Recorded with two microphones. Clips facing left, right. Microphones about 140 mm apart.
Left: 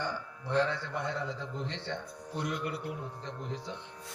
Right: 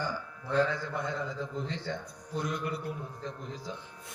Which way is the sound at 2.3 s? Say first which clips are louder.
Right 1 dB; 70° left (ahead or behind).